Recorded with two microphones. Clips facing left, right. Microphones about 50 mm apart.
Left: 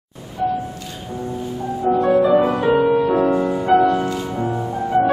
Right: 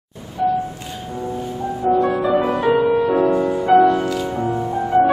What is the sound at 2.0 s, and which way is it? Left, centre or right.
Music, right.